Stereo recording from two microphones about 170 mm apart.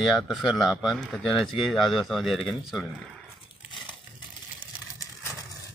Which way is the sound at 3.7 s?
25° left (ahead or behind).